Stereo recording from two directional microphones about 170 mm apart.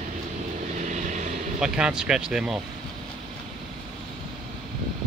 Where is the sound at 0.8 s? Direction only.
45° right (ahead or behind).